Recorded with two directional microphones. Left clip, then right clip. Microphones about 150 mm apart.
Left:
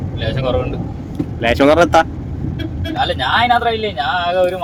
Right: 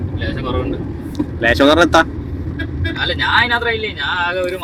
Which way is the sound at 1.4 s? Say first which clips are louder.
Even; 35° left (ahead or behind).